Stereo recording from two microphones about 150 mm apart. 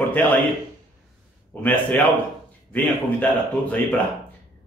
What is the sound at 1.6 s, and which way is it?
Speech, 10° left (ahead or behind).